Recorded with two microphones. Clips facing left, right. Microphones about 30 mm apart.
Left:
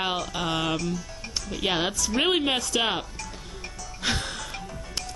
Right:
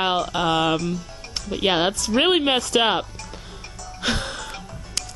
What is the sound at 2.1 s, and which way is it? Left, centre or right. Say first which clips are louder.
Speech: right 5 dB; right.